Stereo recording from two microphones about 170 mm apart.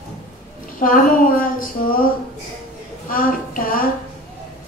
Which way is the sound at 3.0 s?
55° left (ahead or behind).